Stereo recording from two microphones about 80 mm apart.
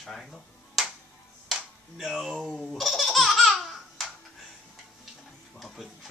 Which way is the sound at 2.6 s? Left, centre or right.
Centre.